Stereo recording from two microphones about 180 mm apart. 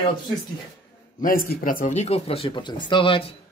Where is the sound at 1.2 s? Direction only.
50° left (ahead or behind).